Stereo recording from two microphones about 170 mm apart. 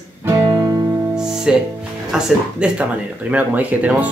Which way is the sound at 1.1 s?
5° right (ahead or behind).